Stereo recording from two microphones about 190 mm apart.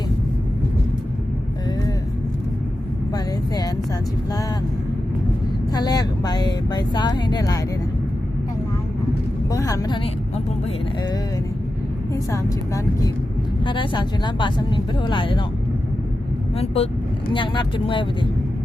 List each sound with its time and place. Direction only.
5.7 s speech: 20° left (ahead or behind)
9.5 s speech: 20° left (ahead or behind)
12.1 s speech: 15° left (ahead or behind)
16.6 s speech: 30° left (ahead or behind)